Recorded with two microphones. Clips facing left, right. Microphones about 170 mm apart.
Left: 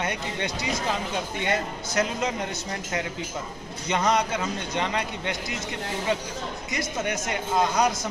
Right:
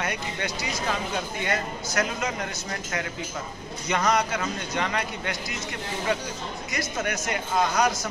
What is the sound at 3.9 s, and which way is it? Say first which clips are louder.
Speech: even; 25° left (ahead or behind).